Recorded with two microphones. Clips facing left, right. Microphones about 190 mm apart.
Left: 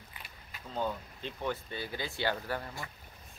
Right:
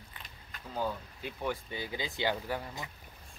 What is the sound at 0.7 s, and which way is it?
Speech, 5° right (ahead or behind).